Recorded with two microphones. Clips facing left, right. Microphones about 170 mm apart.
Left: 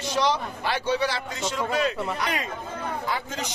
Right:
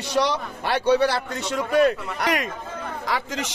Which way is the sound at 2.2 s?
75° right (ahead or behind).